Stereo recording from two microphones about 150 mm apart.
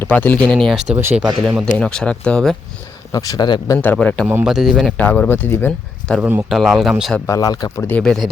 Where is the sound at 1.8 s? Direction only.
5° left (ahead or behind).